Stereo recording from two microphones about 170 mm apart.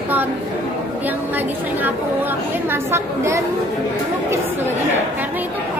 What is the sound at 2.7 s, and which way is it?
Speech, 15° right (ahead or behind).